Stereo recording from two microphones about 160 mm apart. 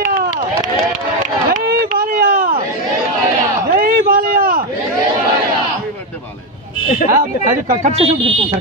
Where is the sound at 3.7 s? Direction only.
65° right (ahead or behind).